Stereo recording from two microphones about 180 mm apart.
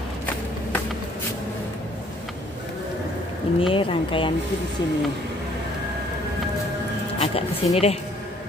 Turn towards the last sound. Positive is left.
turn(degrees=35)  # may be behind; listen again after turning